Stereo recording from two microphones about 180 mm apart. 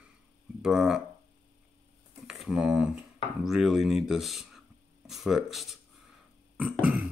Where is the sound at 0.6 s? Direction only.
5° right (ahead or behind).